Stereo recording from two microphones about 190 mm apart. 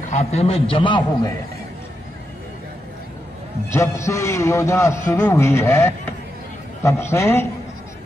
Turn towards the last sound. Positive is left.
turn(degrees=15)  # may be behind; listen again after turning